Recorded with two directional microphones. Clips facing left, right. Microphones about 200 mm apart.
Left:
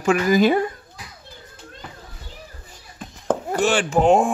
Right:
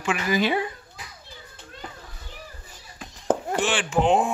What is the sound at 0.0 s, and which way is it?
Speech, 45° left (ahead or behind).